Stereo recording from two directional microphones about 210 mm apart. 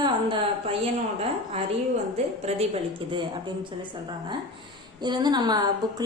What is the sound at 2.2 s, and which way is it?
Speech, 30° right (ahead or behind).